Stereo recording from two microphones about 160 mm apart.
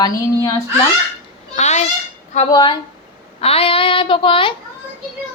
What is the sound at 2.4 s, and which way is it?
A woman's voice, 25° left (ahead or behind).